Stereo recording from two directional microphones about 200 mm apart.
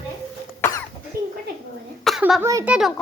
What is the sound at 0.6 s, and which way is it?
Cough, 15° left (ahead or behind).